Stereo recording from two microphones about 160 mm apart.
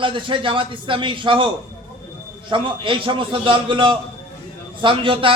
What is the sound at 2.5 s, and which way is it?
A man's voice, 30° right (ahead or behind).